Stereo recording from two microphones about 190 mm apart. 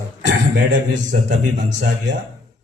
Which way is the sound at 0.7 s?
40° right (ahead or behind).